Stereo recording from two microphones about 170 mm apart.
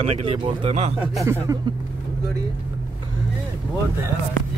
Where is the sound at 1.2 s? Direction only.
15° right (ahead or behind).